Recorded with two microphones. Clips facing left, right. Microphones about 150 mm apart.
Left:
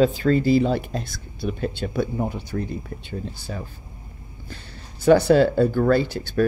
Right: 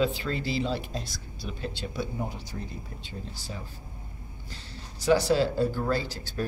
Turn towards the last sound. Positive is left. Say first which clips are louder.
# left 10 dB
turn(degrees=60)  # may be behind; listen again after turning